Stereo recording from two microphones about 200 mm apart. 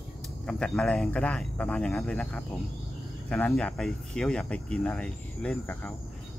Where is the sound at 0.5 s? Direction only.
5° left (ahead or behind).